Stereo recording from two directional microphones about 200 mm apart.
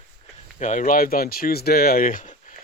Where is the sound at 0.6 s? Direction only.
40° left (ahead or behind).